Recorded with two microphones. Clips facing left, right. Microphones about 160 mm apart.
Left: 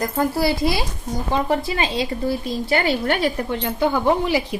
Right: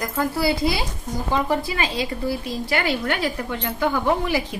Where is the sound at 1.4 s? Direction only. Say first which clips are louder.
Left 2 dB; 25° left (ahead or behind).